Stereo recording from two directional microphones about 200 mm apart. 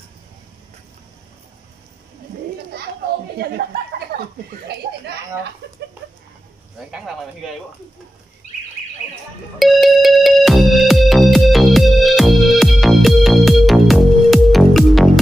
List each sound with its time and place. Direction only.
3.3 s speech: 50° right (ahead or behind)
4.1 s chuckle: 45° right (ahead or behind)
9.6 s music: centre (ahead or behind)